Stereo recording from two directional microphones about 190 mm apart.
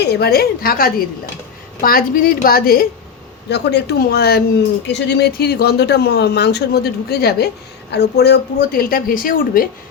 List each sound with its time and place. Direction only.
0.0 s a woman's voice: 60° left (ahead or behind)